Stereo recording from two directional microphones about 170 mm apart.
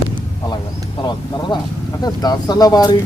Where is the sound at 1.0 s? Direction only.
25° left (ahead or behind).